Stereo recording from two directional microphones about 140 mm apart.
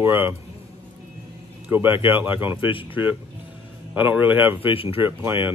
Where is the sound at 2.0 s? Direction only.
35° left (ahead or behind).